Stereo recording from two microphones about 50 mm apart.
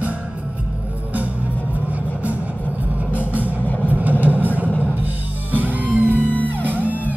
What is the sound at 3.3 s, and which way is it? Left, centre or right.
Vehicle, right.